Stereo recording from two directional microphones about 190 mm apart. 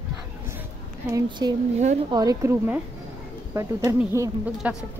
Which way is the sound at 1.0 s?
20° right (ahead or behind).